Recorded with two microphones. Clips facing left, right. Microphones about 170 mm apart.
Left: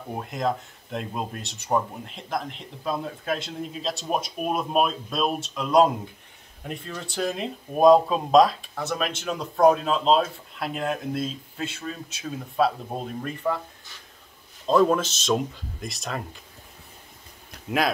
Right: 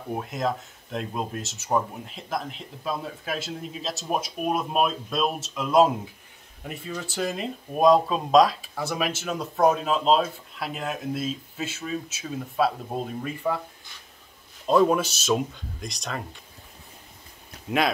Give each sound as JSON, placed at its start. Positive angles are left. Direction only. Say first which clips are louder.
{"t": 0.1, "sound": "speech", "louder": "even", "side_deg": 0}
{"t": 14.7, "sound": "speech", "louder": "even", "side_deg": -5}
{"t": 17.6, "sound": "speech", "louder": "even", "side_deg": 0}